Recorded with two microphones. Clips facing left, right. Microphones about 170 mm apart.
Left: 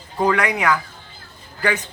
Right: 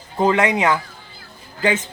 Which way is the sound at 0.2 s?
20° right (ahead or behind).